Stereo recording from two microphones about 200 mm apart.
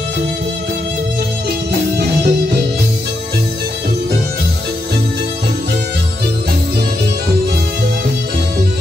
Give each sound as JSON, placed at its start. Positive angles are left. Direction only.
{"t": 2.0, "sound": "music", "side_deg": -50}